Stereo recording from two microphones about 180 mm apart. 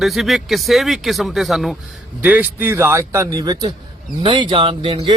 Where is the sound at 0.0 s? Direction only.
Centre (ahead or behind).